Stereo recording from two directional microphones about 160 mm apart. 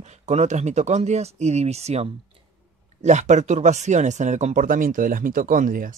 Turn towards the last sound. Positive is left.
turn(degrees=-55)  # may be behind; listen again after turning